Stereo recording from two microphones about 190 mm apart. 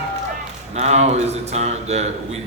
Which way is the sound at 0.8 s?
35° right (ahead or behind).